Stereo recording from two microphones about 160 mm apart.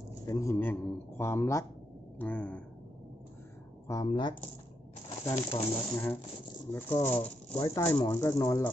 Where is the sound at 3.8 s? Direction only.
25° left (ahead or behind).